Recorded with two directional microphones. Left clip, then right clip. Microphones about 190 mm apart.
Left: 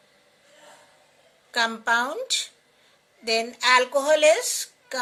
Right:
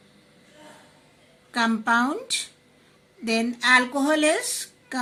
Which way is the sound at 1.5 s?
25° left (ahead or behind).